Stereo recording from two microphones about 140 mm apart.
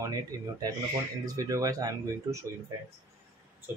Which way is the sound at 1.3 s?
20° right (ahead or behind).